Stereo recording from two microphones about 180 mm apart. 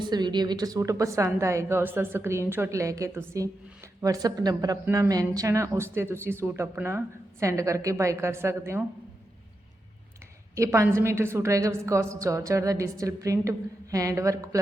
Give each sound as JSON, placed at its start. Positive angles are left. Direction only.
{"t": 0.0, "sound": "speech", "side_deg": -25}
{"t": 10.5, "sound": "speech", "side_deg": -15}